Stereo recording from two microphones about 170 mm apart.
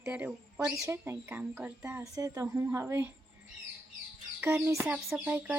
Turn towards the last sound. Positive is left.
turn(degrees=-10)  # may be behind; listen again after turning